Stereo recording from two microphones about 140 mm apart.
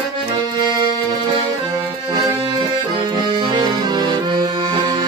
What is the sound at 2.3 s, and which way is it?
Accordion, 35° right (ahead or behind).